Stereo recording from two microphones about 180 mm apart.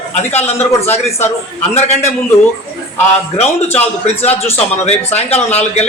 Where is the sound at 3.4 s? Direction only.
35° left (ahead or behind).